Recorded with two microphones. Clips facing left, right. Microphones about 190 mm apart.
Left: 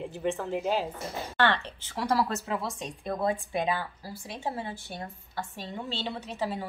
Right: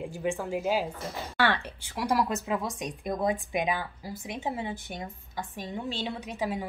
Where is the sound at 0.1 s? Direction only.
10° right (ahead or behind).